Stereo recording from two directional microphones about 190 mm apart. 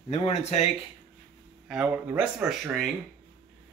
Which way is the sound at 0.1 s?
35° left (ahead or behind).